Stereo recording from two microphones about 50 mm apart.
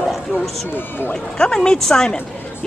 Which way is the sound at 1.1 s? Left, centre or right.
Centre.